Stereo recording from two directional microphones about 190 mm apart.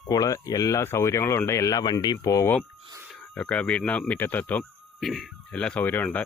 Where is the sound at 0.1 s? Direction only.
20° left (ahead or behind).